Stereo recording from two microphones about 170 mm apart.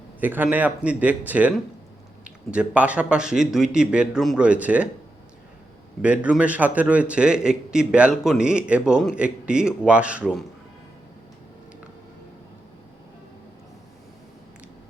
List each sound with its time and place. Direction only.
0.2 s a man's voice: 10° right (ahead or behind)
6.0 s a man's voice: 5° right (ahead or behind)